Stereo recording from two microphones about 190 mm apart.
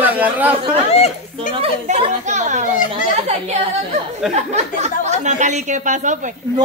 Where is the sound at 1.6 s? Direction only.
35° right (ahead or behind).